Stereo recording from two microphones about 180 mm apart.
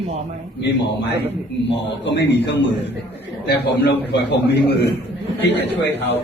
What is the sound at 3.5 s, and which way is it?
A man's voice, 65° left (ahead or behind).